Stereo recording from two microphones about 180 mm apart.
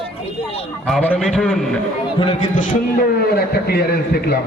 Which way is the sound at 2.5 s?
45° left (ahead or behind).